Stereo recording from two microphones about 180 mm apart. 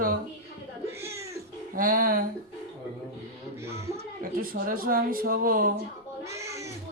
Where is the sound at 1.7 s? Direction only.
50° right (ahead or behind).